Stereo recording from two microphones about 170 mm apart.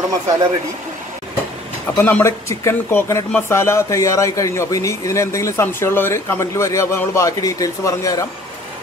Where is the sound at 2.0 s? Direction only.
10° left (ahead or behind).